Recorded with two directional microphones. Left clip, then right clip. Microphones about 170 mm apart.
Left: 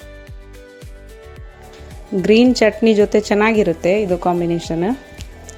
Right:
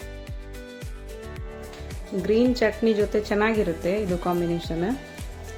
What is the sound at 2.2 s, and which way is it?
Speech, 45° left (ahead or behind).